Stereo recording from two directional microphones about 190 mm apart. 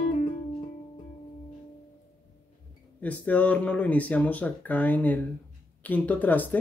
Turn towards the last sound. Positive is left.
turn(degrees=10)  # may be behind; listen again after turning